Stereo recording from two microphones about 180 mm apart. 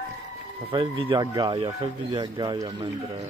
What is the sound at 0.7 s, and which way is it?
Speech, 25° right (ahead or behind).